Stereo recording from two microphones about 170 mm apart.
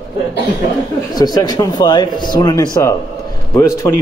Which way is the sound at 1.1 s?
25° left (ahead or behind).